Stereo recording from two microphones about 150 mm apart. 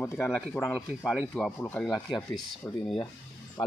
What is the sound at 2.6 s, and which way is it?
Speech, 15° left (ahead or behind).